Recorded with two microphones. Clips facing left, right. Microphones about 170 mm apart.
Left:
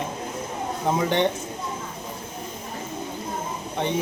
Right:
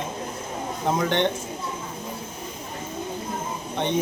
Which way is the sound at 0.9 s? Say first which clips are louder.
Left 1 dB; 5° left (ahead or behind).